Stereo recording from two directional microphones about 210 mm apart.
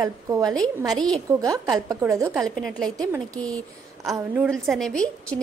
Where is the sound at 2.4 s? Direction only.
5° left (ahead or behind).